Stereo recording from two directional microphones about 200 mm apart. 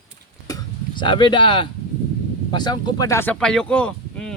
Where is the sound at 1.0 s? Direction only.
25° left (ahead or behind).